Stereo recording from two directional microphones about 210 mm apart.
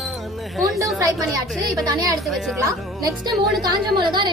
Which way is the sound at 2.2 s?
Centre (ahead or behind).